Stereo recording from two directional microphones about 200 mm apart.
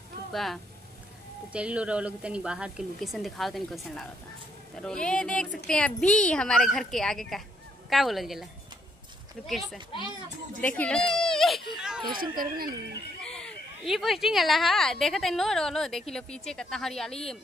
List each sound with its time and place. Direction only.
0.3 s speech: centre (ahead or behind)
9.5 s a child's voice: centre (ahead or behind)
12.1 s speech: 45° right (ahead or behind)
13.2 s speech: 5° left (ahead or behind)